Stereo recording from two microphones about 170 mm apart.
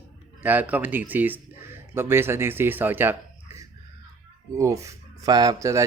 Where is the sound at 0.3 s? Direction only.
10° right (ahead or behind).